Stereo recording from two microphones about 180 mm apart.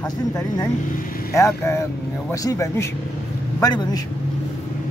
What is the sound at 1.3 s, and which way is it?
Vehicle, 15° left (ahead or behind).